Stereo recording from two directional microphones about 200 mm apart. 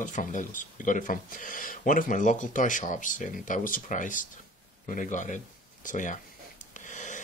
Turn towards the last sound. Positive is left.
turn(degrees=40)  # may be behind; listen again after turning